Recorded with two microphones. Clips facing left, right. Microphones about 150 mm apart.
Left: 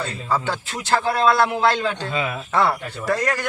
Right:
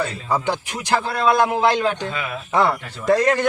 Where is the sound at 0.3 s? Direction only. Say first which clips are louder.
Left 1 dB; 15° right (ahead or behind).